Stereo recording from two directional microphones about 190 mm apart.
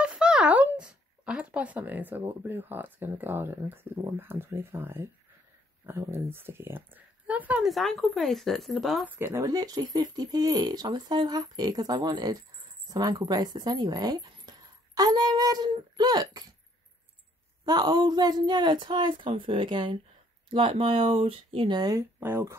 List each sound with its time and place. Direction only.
0.0 s speech: 5° right (ahead or behind)
9.2 s speech: 15° right (ahead or behind)
17.6 s speech: 20° right (ahead or behind)